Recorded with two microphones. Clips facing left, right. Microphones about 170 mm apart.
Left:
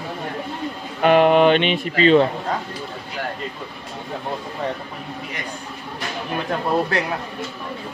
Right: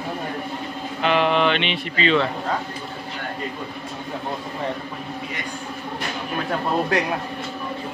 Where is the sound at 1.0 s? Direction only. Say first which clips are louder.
Left 6 dB; 45° left (ahead or behind).